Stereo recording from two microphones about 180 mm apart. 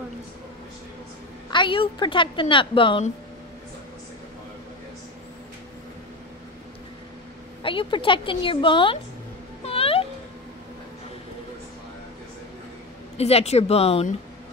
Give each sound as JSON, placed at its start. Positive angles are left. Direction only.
{"t": 1.5, "sound": "a woman's voice", "side_deg": 25}
{"t": 7.6, "sound": "a woman's voice", "side_deg": 30}
{"t": 9.7, "sound": "a sound", "side_deg": 30}
{"t": 13.2, "sound": "speech", "side_deg": 35}